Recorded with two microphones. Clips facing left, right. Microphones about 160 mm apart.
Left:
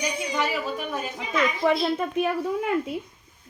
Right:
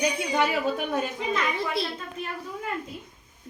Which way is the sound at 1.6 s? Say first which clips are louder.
Left 8 dB; 70° left (ahead or behind).